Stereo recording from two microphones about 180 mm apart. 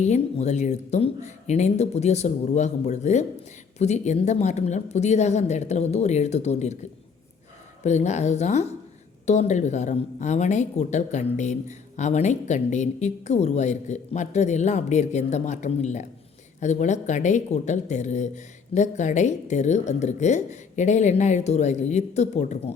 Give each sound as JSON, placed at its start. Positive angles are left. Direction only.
{"t": 0.0, "sound": "a woman's voice", "side_deg": 40}
{"t": 7.9, "sound": "a woman's voice", "side_deg": 40}